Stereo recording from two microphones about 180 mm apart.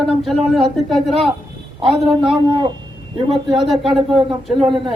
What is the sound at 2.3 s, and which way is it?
Speech, 25° right (ahead or behind).